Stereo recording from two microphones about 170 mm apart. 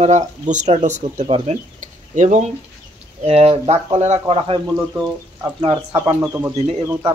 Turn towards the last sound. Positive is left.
turn(degrees=-15)  # may be behind; listen again after turning